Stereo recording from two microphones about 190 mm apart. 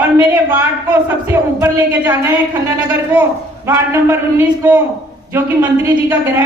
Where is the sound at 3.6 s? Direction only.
15° right (ahead or behind).